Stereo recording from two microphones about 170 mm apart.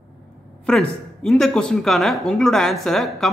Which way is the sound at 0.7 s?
5° left (ahead or behind).